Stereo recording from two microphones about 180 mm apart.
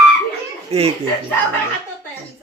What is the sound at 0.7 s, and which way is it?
Speech, 35° right (ahead or behind).